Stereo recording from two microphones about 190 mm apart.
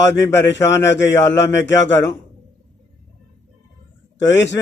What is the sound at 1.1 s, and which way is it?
Speech, 15° left (ahead or behind).